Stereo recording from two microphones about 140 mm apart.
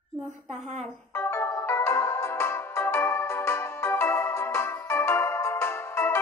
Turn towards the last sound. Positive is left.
turn(degrees=15)  # may be behind; listen again after turning